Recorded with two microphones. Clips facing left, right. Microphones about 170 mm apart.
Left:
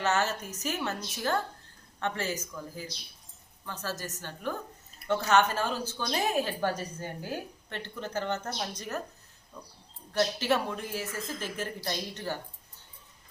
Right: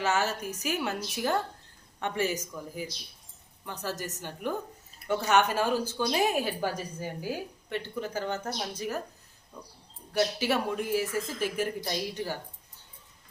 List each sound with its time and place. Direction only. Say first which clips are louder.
0.0 s speech: even; 10° right (ahead or behind)
10.1 s speech: even; 10° right (ahead or behind)